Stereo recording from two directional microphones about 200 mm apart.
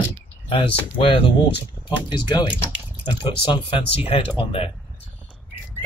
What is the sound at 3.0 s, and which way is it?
Speech, 25° left (ahead or behind).